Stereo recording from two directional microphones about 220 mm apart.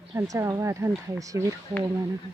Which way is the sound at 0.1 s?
15° right (ahead or behind).